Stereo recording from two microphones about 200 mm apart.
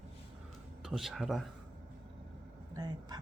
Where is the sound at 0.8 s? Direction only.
Centre (ahead or behind).